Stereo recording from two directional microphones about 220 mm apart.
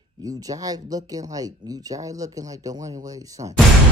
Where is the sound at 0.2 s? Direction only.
15° right (ahead or behind).